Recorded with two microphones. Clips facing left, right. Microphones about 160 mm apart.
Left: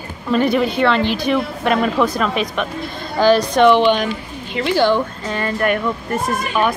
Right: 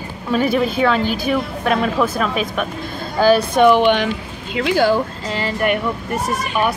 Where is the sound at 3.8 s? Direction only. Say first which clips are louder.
Even; 80° right.